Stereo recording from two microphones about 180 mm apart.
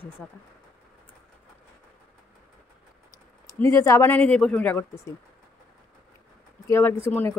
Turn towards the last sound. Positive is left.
turn(degrees=10)  # may be behind; listen again after turning